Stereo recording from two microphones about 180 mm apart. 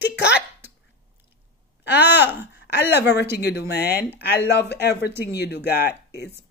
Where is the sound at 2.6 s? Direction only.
70° left (ahead or behind).